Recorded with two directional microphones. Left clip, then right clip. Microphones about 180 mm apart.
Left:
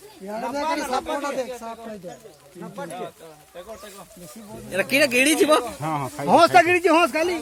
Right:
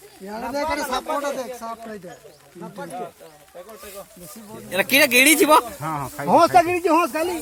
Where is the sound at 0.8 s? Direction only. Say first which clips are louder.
Even; 10° left (ahead or behind).